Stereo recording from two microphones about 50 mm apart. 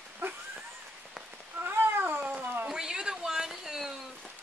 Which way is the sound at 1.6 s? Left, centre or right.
Right.